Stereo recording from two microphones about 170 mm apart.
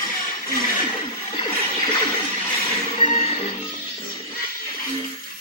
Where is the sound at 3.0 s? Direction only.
45° left (ahead or behind).